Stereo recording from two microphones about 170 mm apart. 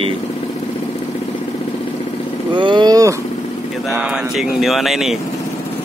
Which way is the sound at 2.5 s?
30° right (ahead or behind).